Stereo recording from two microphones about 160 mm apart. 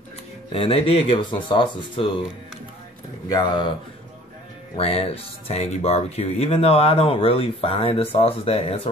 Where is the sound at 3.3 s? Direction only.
25° left (ahead or behind).